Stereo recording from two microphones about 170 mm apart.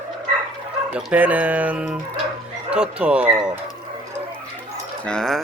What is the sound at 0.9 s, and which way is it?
Speech, 10° right (ahead or behind).